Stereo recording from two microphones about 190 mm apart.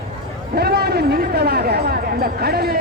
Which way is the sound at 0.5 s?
55° right (ahead or behind).